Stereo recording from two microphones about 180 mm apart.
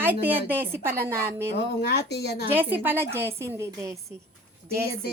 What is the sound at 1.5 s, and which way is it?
Speech, 65° left (ahead or behind).